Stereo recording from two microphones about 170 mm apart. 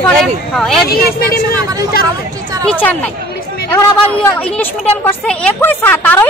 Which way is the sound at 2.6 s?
10° left (ahead or behind).